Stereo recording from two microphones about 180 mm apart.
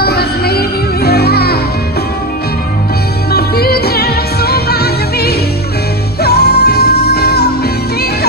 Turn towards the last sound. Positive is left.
turn(degrees=65)  # may be behind; listen again after turning